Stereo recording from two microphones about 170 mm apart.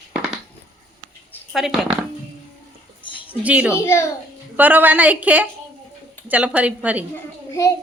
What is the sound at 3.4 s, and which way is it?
Speech, 5° right (ahead or behind).